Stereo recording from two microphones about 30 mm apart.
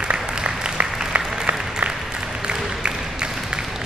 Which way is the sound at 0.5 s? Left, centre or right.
Right.